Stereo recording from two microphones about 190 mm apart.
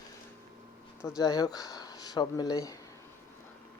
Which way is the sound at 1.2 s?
20° left (ahead or behind).